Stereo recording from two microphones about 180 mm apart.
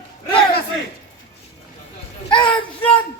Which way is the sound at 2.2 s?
30° left (ahead or behind).